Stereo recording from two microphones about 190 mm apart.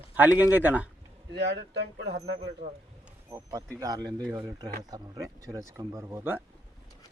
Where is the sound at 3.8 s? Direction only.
20° right (ahead or behind).